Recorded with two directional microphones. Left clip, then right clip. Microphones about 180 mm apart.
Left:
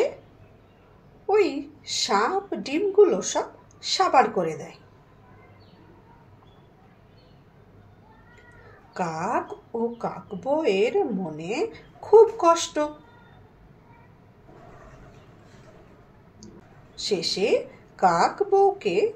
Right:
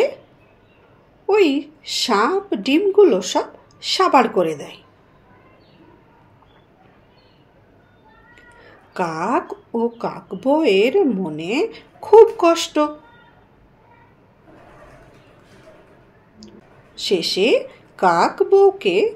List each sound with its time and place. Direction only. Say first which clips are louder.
1.2 s speech: right 6 dB; 50° right (ahead or behind)
8.9 s speech: right 6 dB; 50° right (ahead or behind)
16.9 s speech: right 6 dB; 50° right (ahead or behind)